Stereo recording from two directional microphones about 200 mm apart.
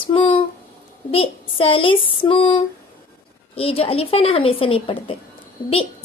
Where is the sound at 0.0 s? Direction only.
25° left (ahead or behind).